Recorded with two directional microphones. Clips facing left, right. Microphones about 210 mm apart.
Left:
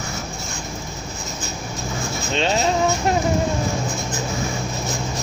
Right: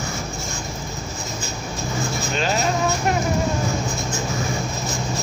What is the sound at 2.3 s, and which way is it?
Speech, 25° left (ahead or behind).